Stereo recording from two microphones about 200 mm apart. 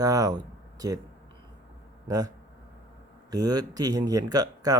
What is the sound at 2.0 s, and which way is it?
Speech, 20° right (ahead or behind).